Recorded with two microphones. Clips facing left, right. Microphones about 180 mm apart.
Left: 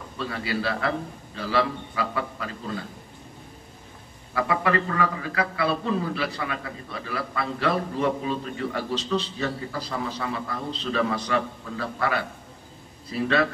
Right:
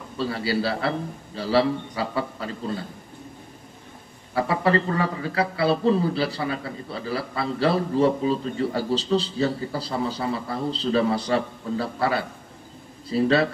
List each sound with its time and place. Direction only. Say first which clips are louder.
0.2 s a man's voice: right 4 dB; 30° right (ahead or behind)
4.3 s a man's voice: right 3 dB; 30° right (ahead or behind)